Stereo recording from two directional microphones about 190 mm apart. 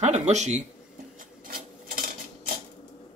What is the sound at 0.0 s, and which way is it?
Speech, 35° right (ahead or behind).